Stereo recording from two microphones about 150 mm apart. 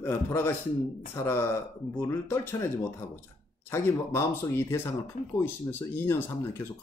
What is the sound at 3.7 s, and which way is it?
Speech, 20° left (ahead or behind).